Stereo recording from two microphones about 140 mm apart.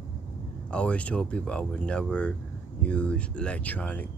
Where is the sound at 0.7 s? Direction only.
10° left (ahead or behind).